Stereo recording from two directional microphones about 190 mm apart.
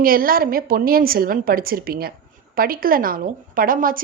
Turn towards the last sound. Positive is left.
turn(degrees=-50)  # may be behind; listen again after turning